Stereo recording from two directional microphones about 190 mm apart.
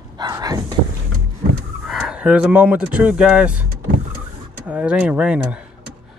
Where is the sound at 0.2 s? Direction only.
20° right (ahead or behind).